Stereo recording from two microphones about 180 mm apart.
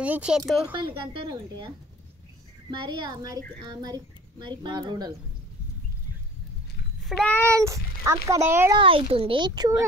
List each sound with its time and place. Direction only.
0.0 s speech: 5° right (ahead or behind)
0.7 s speech: 30° right (ahead or behind)
2.7 s speech: 25° right (ahead or behind)
7.1 s a child's voice: 10° left (ahead or behind)
7.6 s speech: 15° right (ahead or behind)
8.7 s speech: 30° right (ahead or behind)